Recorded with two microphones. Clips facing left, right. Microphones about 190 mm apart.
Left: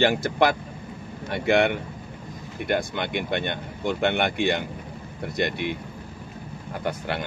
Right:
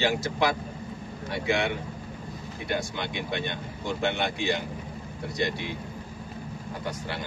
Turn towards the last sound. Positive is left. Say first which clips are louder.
# left 5 dB
turn(degrees=60)  # may be behind; listen again after turning